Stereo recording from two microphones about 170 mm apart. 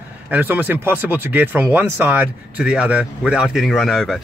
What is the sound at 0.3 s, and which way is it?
Speech, 10° right (ahead or behind).